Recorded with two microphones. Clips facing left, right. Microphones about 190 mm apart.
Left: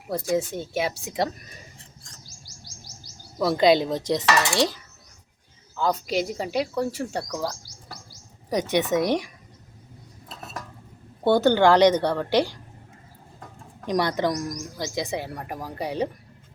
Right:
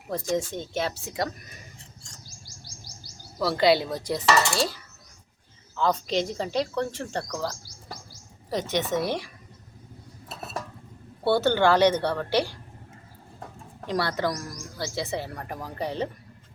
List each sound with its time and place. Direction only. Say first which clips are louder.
0.1 s speech: left 3 dB; 10° left (ahead or behind)
3.4 s a woman's voice: left 3 dB; 20° left (ahead or behind)
5.7 s speech: left 1 dB; 10° left (ahead or behind)
8.4 s speech: left 4 dB; 15° left (ahead or behind)
11.2 s speech: left 3 dB; 15° left (ahead or behind)
13.8 s speech: left 3 dB; 15° left (ahead or behind)